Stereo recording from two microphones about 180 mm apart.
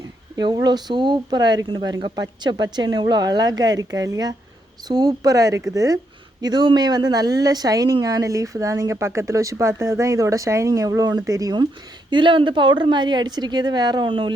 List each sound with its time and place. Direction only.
0.3 s speech: 20° right (ahead or behind)